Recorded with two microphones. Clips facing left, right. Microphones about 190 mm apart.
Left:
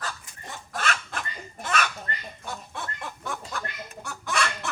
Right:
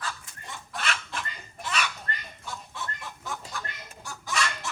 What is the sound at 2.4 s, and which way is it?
Chicken, 55° left (ahead or behind).